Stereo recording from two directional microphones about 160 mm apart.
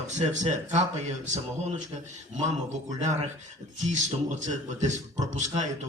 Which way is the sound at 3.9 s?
50° right (ahead or behind).